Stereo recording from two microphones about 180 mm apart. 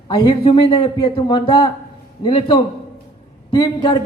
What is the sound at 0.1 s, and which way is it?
A man's voice, 30° left (ahead or behind).